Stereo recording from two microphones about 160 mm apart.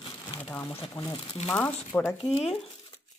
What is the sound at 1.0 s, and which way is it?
Speech, 35° left (ahead or behind).